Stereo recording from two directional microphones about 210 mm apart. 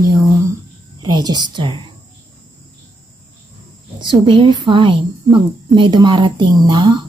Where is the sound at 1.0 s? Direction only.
20° right (ahead or behind).